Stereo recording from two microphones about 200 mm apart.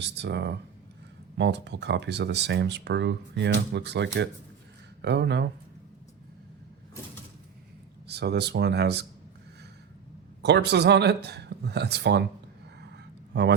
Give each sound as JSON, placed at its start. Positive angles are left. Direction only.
{"t": 0.2, "sound": "speech", "side_deg": -60}
{"t": 8.0, "sound": "speech", "side_deg": -55}
{"t": 10.4, "sound": "speech", "side_deg": -55}
{"t": 12.9, "sound": "a sound", "side_deg": -60}